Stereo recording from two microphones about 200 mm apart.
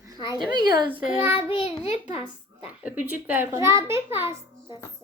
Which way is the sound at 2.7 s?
10° right (ahead or behind).